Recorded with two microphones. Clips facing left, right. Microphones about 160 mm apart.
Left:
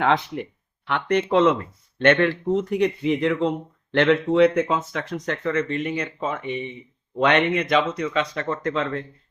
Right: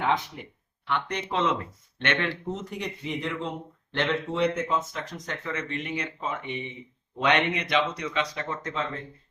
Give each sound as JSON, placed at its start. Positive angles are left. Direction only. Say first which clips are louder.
{"t": 0.0, "sound": "speech", "louder": "left 6 dB", "side_deg": 70}
{"t": 0.9, "sound": "speech", "louder": "left 8 dB", "side_deg": 55}